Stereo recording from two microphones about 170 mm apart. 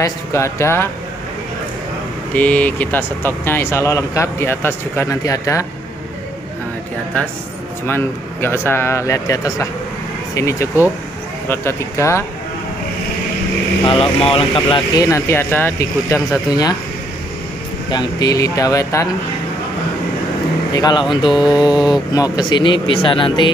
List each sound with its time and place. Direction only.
0.0 s speech: 15° left (ahead or behind)
2.3 s speech: 10° left (ahead or behind)
7.8 s speech: 15° left (ahead or behind)
13.8 s speech: 30° left (ahead or behind)
15.0 s speech: 15° left (ahead or behind)
17.9 s speech: 20° left (ahead or behind)
20.7 s speech: 25° left (ahead or behind)